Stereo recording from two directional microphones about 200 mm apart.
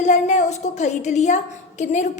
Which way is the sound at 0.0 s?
35° left (ahead or behind).